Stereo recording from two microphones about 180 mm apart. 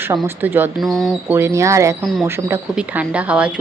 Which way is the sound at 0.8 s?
Centre (ahead or behind).